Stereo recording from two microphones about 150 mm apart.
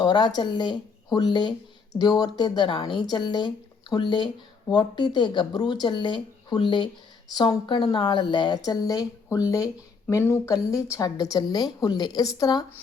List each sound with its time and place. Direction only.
0.0 s speech: 30° left (ahead or behind)